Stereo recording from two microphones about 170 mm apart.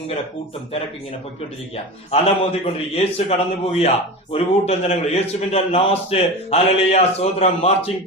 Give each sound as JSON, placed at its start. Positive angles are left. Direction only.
{"t": 1.7, "sound": "a man's voice", "side_deg": 35}